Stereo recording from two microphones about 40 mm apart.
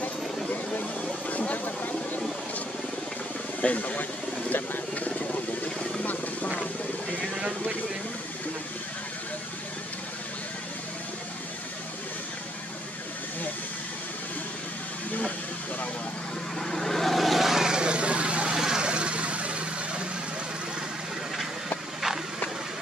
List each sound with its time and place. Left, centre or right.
1.3 s a sound: left
3.6 s vehicle: left
16.5 s vehicle: centre
17.6 s vehicle: right